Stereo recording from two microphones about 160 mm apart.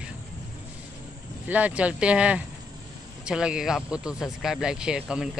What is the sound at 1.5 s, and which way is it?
Speech, 10° right (ahead or behind).